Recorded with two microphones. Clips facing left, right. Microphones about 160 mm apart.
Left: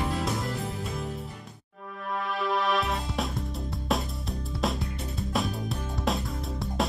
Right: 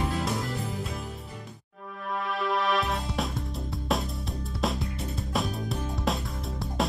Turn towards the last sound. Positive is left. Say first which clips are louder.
# even
turn(degrees=0)  # may be behind; listen again after turning